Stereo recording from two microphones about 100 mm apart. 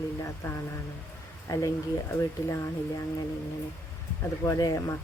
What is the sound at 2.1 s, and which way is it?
Speech, 30° left (ahead or behind).